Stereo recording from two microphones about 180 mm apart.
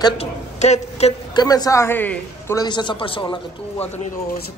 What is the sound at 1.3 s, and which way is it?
A man's voice, 20° left (ahead or behind).